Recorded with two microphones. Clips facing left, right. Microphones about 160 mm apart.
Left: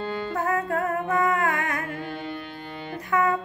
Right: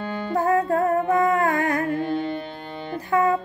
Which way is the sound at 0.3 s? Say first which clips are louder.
Right 7 dB; 30° right (ahead or behind).